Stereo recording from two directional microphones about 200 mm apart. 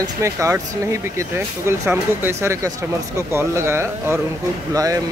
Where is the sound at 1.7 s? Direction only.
10° right (ahead or behind).